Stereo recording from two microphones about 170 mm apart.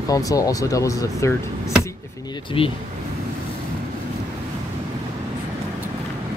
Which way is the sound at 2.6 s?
35° left (ahead or behind).